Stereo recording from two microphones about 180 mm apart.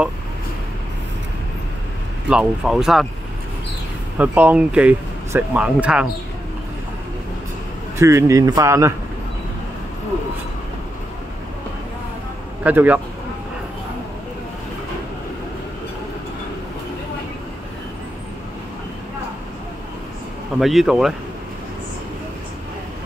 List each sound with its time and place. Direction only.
2.2 s speech: 5° right (ahead or behind)
4.2 s speech: 10° right (ahead or behind)
8.0 s speech: 15° right (ahead or behind)
12.6 s speech: 10° right (ahead or behind)
20.5 s speech: centre (ahead or behind)